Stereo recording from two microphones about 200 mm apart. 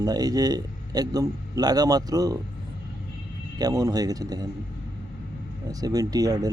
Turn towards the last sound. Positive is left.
turn(degrees=-20)  # may be behind; listen again after turning